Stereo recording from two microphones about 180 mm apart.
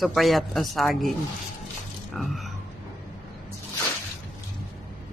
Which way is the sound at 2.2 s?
Centre (ahead or behind).